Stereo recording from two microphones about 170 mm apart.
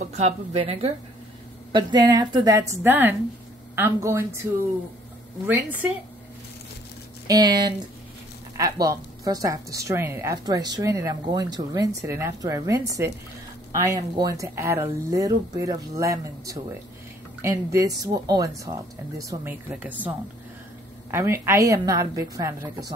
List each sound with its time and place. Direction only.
0.0 s speech: 40° right (ahead or behind)
1.7 s a woman's voice: 25° right (ahead or behind)
5.5 s speech: 10° right (ahead or behind)
7.2 s a woman's voice: 20° right (ahead or behind)